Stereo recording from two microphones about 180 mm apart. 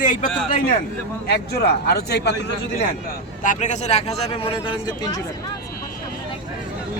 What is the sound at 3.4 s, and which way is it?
A man's voice, 45° left (ahead or behind).